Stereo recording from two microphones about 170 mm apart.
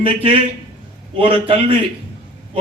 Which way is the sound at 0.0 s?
30° right (ahead or behind).